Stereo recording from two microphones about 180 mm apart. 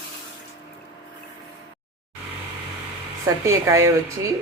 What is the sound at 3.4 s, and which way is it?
Speech, 15° right (ahead or behind).